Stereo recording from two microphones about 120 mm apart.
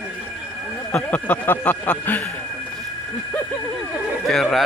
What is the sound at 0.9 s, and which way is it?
Speech, 15° left (ahead or behind).